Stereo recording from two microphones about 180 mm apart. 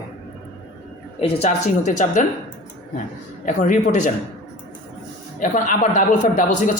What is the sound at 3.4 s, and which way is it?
Speech, 45° left (ahead or behind).